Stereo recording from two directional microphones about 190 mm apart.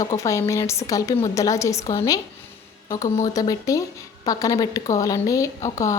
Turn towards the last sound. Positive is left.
turn(degrees=15)  # may be behind; listen again after turning